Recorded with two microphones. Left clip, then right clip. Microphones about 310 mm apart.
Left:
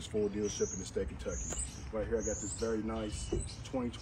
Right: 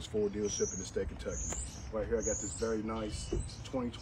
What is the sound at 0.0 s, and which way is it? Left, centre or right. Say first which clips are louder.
Speech: right 1 dB; centre.